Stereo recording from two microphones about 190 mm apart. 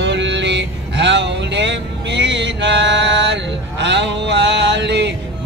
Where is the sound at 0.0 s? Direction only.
70° right (ahead or behind).